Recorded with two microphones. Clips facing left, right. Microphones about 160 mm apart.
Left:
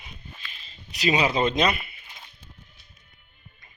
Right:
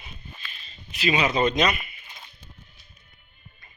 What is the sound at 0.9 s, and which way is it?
Speech, 35° left (ahead or behind).